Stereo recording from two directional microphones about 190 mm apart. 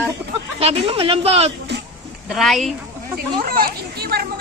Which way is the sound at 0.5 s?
30° right (ahead or behind).